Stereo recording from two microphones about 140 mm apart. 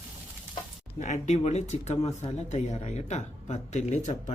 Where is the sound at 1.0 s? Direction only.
55° left (ahead or behind).